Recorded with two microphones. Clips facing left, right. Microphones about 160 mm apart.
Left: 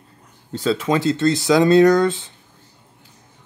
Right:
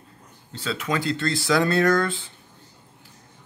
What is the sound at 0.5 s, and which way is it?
Speech, 40° left (ahead or behind).